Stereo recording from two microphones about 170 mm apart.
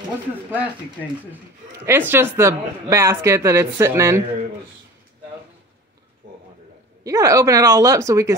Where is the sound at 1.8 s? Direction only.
15° right (ahead or behind).